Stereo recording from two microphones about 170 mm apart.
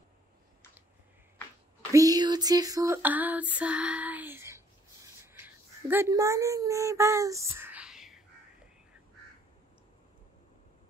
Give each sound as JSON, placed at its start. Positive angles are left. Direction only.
{"t": 1.9, "sound": "female singing", "side_deg": -20}
{"t": 5.2, "sound": "speech", "side_deg": -10}